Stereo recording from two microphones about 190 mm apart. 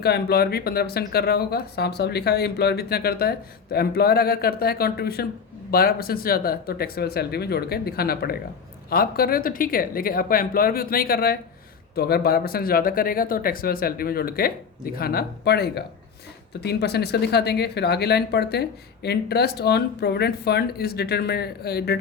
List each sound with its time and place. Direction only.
0.0 s speech: 55° left (ahead or behind)